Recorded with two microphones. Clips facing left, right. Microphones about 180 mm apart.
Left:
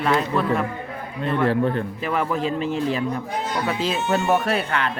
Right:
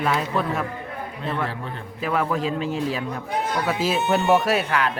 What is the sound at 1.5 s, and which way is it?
Speech, 55° left (ahead or behind).